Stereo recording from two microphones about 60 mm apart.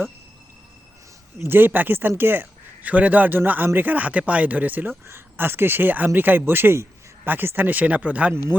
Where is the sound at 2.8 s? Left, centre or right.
Right.